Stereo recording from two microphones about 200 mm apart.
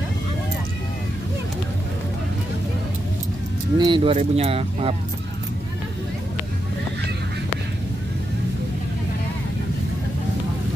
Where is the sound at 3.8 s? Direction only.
25° right (ahead or behind).